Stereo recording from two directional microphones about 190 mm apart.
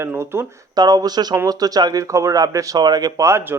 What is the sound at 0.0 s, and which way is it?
Speech, 15° right (ahead or behind).